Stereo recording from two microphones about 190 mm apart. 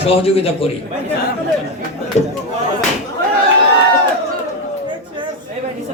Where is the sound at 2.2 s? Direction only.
35° left (ahead or behind).